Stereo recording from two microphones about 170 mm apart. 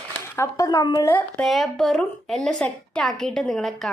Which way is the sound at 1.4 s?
Centre (ahead or behind).